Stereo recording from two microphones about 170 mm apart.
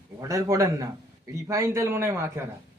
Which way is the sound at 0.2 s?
20° right (ahead or behind).